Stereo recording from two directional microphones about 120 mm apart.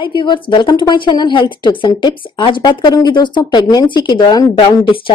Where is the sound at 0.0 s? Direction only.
40° left (ahead or behind).